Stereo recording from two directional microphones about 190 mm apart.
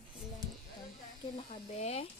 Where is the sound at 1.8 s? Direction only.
35° left (ahead or behind).